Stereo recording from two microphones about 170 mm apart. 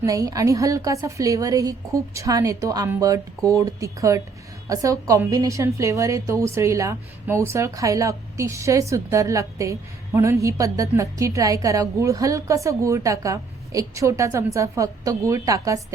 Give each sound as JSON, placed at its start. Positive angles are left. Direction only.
{"t": 0.0, "sound": "a woman's voice", "side_deg": -20}